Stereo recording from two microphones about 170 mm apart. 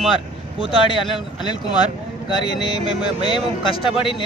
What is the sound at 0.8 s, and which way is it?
Speech, 30° left (ahead or behind).